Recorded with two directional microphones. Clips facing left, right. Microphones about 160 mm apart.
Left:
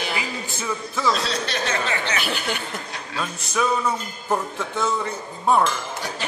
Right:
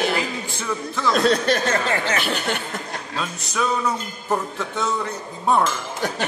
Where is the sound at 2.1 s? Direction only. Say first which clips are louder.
Right 3 dB; centre (ahead or behind).